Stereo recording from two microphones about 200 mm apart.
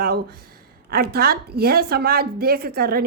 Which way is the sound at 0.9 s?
50° right (ahead or behind).